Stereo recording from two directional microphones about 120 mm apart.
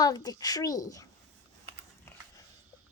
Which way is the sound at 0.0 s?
35° left (ahead or behind).